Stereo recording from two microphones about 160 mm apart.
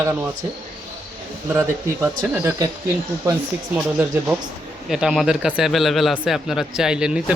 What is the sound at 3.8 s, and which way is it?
Speech, 10° right (ahead or behind).